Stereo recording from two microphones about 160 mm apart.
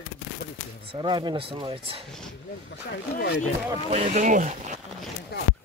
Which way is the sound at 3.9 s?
45° right (ahead or behind).